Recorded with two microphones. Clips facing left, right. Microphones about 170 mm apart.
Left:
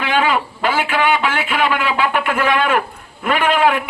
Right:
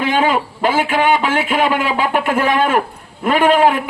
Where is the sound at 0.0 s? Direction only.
45° right (ahead or behind).